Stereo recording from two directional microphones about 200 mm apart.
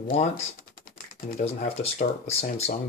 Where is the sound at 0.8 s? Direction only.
45° left (ahead or behind).